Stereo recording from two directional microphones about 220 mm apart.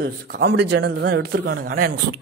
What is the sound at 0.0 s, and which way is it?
A man's voice, 45° right (ahead or behind).